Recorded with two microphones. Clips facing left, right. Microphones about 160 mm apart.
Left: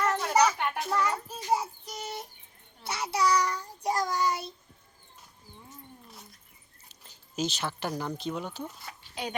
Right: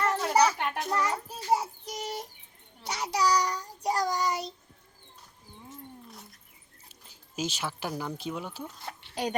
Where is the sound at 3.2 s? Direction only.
40° right (ahead or behind).